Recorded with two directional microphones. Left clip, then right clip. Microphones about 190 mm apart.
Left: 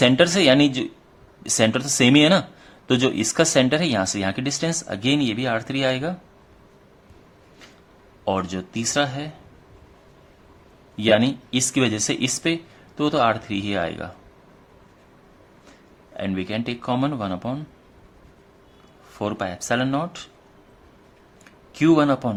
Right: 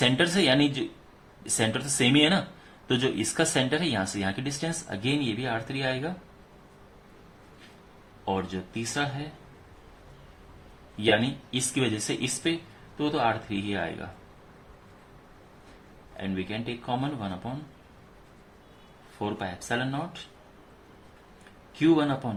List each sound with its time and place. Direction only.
0.0 s speech: 40° left (ahead or behind)
8.2 s speech: 50° left (ahead or behind)
10.9 s speech: 45° left (ahead or behind)
16.1 s speech: 50° left (ahead or behind)
19.2 s speech: 50° left (ahead or behind)
21.8 s speech: 50° left (ahead or behind)